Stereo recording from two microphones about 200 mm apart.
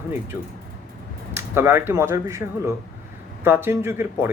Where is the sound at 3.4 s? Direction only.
10° right (ahead or behind).